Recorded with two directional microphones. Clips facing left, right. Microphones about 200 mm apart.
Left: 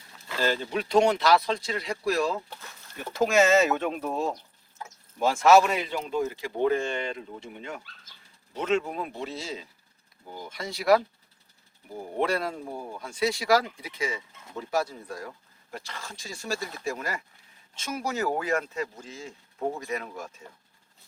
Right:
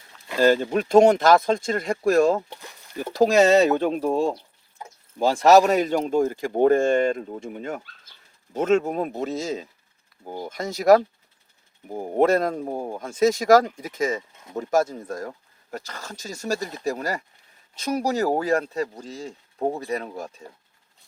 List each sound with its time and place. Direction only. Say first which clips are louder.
0.4 s speech: right 9 dB; 45° right (ahead or behind)
2.5 s a sound: right 5 dB; 15° right (ahead or behind)
3.1 s speech: right 5 dB; 35° right (ahead or behind)